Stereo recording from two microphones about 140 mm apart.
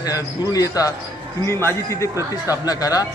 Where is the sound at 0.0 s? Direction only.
25° left (ahead or behind).